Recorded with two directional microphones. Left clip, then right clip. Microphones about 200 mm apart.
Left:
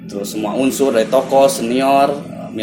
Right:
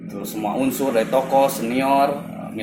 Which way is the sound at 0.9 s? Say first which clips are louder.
Left 4 dB; 50° left (ahead or behind).